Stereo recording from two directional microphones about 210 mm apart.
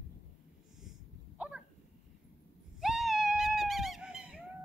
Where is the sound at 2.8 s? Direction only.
Centre (ahead or behind).